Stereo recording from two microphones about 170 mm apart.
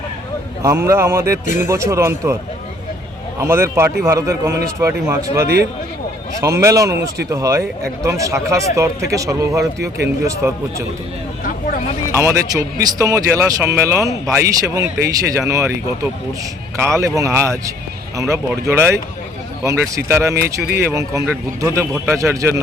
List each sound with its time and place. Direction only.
0.6 s speech: 15° right (ahead or behind)
3.4 s speech: 15° right (ahead or behind)
12.1 s speech: 15° right (ahead or behind)
16.8 s speech: 15° right (ahead or behind)
20.0 s speech: 15° right (ahead or behind)